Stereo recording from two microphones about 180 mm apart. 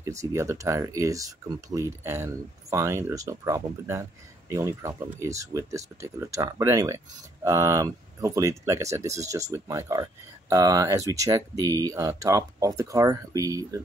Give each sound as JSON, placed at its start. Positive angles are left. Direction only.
{"t": 0.0, "sound": "speech", "side_deg": -15}